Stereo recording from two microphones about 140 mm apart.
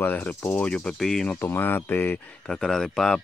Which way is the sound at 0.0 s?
10° left (ahead or behind).